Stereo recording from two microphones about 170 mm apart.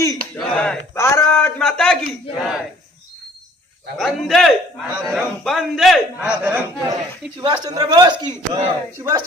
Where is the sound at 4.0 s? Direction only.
Centre (ahead or behind).